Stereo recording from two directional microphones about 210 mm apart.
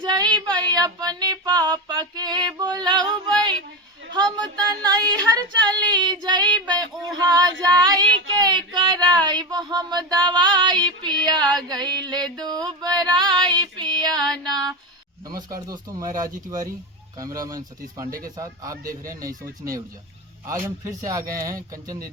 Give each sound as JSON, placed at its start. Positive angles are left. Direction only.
{"t": 0.0, "sound": "a sound", "side_deg": -20}
{"t": 0.5, "sound": "speech", "side_deg": -20}
{"t": 2.6, "sound": "yodeling", "side_deg": -20}
{"t": 4.2, "sound": "speech", "side_deg": -20}
{"t": 8.4, "sound": "a sound", "side_deg": -20}
{"t": 9.2, "sound": "a man's voice", "side_deg": -20}